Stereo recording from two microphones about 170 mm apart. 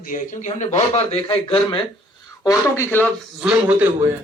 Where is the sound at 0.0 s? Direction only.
45° left (ahead or behind); by 1.8 s 30° left (ahead or behind).